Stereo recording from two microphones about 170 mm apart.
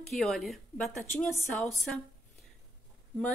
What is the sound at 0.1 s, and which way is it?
Speech, centre (ahead or behind).